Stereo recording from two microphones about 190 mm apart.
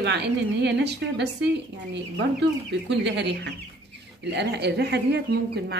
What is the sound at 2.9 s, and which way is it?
Speech, 65° right (ahead or behind).